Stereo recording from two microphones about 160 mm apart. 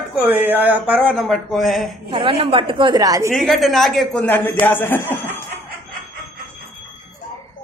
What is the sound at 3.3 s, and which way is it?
Speech, centre (ahead or behind).